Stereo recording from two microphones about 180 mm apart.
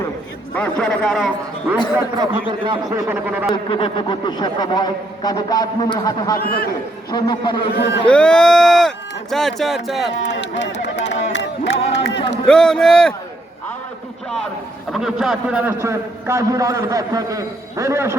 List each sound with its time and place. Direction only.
0.5 s a man's voice: 5° left (ahead or behind)
2.0 s a man's voice: 20° right (ahead or behind)
3.1 s a man's voice: 10° right (ahead or behind)
3.5 s speech: 30° left (ahead or behind)
6.3 s a man's voice: 55° left (ahead or behind)
7.1 s speech: 25° left (ahead or behind)
8.0 s a man's voice: 5° left (ahead or behind)
10.1 s speech: 80° left
11.0 s crowd: 75° left (ahead or behind)
11.9 s a sound: 75° left (ahead or behind)
12.5 s a man's voice: 5° left (ahead or behind)
14.9 s a man's voice: 5° right (ahead or behind)